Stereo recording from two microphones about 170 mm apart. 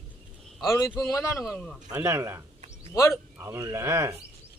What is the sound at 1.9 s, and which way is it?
Speech, 15° right (ahead or behind).